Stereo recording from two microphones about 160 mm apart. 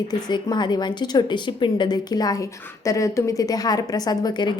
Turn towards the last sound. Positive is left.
turn(degrees=25)  # may be behind; listen again after turning